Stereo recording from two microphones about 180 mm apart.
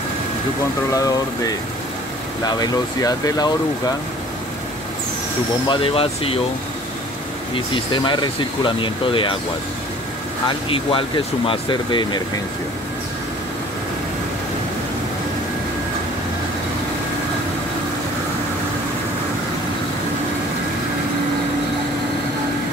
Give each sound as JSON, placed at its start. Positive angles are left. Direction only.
{"t": 0.9, "sound": "speech", "side_deg": 20}
{"t": 2.6, "sound": "speech", "side_deg": 20}
{"t": 5.7, "sound": "speech", "side_deg": 30}
{"t": 7.7, "sound": "speech", "side_deg": 25}
{"t": 10.7, "sound": "speech", "side_deg": 30}